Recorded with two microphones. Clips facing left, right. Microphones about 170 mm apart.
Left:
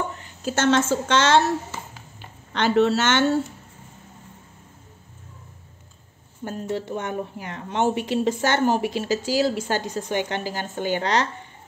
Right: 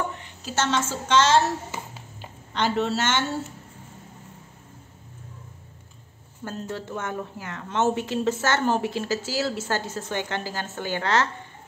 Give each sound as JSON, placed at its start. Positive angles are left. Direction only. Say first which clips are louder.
{"t": 0.2, "sound": "a woman's voice", "louder": "left 4 dB", "side_deg": 55}
{"t": 2.5, "sound": "a woman's voice", "louder": "left 5 dB", "side_deg": 70}
{"t": 6.4, "sound": "a woman's voice", "louder": "left 4 dB", "side_deg": 15}